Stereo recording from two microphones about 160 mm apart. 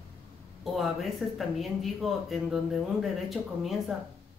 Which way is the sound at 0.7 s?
Centre (ahead or behind).